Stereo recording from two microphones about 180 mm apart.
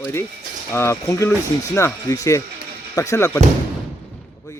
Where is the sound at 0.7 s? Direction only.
15° left (ahead or behind).